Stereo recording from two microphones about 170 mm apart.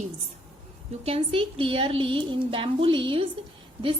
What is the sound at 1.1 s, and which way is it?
A woman's voice, 35° right (ahead or behind).